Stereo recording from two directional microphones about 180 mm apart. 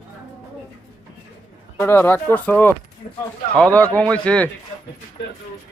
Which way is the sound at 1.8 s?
10° left (ahead or behind).